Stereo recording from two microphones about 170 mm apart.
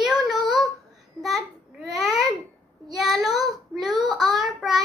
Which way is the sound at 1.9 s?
Centre (ahead or behind).